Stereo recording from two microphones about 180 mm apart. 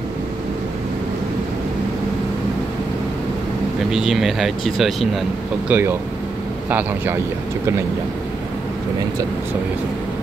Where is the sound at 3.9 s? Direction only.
Centre (ahead or behind).